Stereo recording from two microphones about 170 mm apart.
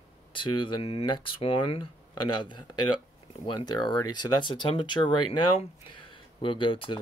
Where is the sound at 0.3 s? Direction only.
30° left (ahead or behind).